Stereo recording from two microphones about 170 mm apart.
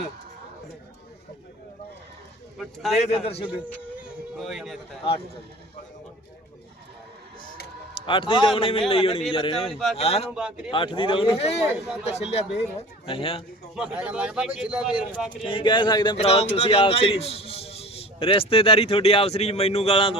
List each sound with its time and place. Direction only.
2.6 s speech: centre (ahead or behind)
3.1 s a man's voice: 35° left (ahead or behind)
4.4 s speech: centre (ahead or behind)
8.0 s a man's voice: 30° left (ahead or behind)
9.7 s speech: centre (ahead or behind)
10.0 s a man's voice: 35° left (ahead or behind)
13.7 s speech: 5° right (ahead or behind)
15.4 s speech: 30° left (ahead or behind)
16.1 s a man's voice: 35° left (ahead or behind)